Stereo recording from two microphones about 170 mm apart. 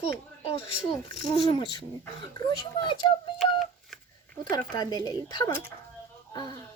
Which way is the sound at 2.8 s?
30° left (ahead or behind).